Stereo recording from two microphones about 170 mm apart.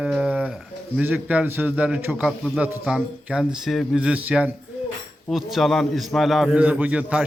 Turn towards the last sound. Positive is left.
turn(degrees=-10)  # may be behind; listen again after turning